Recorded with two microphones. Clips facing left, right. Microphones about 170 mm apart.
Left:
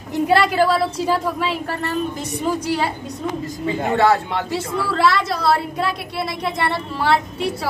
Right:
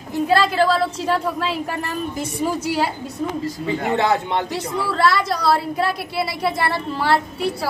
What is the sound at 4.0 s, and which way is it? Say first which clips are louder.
Speech: left 4 dB; 20° right (ahead or behind).